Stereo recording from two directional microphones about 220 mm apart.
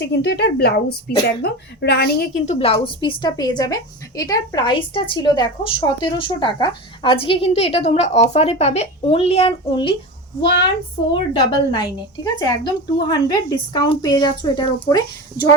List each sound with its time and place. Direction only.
0.0 s a woman's voice: 50° left (ahead or behind); by 9.9 s 25° left (ahead or behind)
11.1 s a woman's voice: 20° left (ahead or behind)